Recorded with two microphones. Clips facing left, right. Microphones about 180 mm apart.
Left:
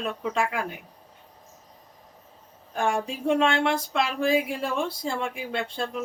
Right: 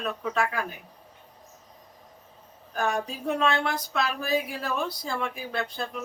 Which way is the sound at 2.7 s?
25° left (ahead or behind).